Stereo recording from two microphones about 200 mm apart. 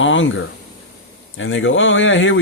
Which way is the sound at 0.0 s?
70° left (ahead or behind).